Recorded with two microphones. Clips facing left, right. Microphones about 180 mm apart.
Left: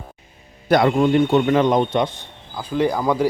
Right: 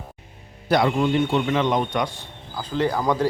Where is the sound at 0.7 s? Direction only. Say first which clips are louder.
Left 4 dB; 50° left (ahead or behind).